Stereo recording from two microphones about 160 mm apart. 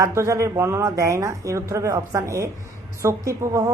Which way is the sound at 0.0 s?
20° right (ahead or behind).